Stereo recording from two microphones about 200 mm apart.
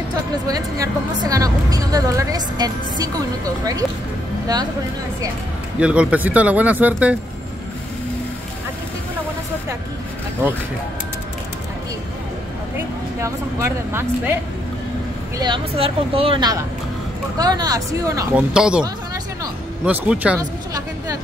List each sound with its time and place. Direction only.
0.5 s a woman's voice: 20° right (ahead or behind)
5.8 s a man's voice: 5° right (ahead or behind)
13.2 s a woman's voice: 15° right (ahead or behind)
15.3 s a woman's voice: 25° right (ahead or behind)
18.5 s a man's voice: 5° right (ahead or behind)